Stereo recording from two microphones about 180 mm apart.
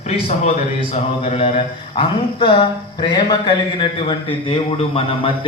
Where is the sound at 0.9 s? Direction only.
35° left (ahead or behind).